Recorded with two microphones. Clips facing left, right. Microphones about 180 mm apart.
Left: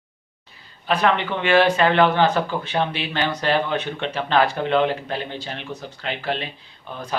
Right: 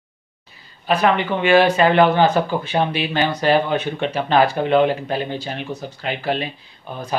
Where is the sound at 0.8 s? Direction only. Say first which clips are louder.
Right 3 dB; 10° right (ahead or behind).